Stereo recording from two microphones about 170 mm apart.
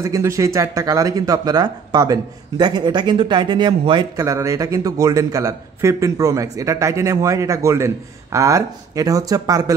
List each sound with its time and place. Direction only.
0.0 s speech: 20° right (ahead or behind)